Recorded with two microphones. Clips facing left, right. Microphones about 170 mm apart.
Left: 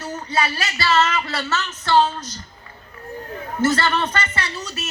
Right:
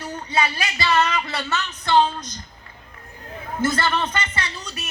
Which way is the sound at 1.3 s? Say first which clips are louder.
Left 2 dB; 15° right (ahead or behind).